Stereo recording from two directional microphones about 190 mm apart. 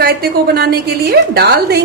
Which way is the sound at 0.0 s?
55° right (ahead or behind).